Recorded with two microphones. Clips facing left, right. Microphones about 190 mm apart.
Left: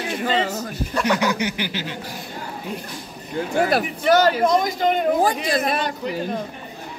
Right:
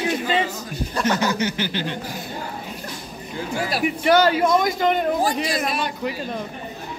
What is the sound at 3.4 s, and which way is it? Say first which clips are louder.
Speech: left 6 dB; 55° left (ahead or behind).